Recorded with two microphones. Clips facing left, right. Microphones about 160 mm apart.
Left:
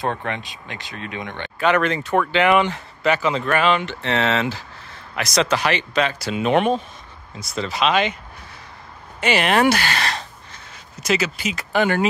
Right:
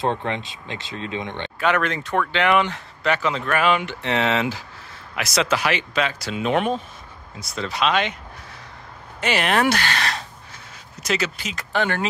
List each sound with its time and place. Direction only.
0.0 s speech: 20° right (ahead or behind)
1.6 s speech: centre (ahead or behind)
9.2 s speech: centre (ahead or behind)